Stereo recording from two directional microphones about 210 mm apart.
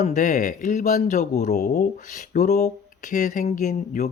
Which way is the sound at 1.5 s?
45° left (ahead or behind).